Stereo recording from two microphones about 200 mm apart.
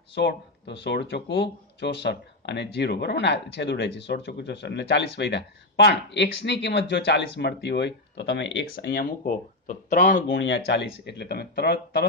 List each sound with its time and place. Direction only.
0.1 s speech: 55° left (ahead or behind)
8.7 s speech: 45° left (ahead or behind)
10.3 s speech: 65° left (ahead or behind)